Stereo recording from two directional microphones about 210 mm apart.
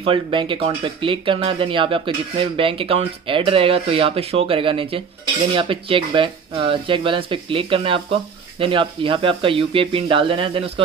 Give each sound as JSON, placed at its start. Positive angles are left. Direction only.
{"t": 0.0, "sound": "speech", "side_deg": -25}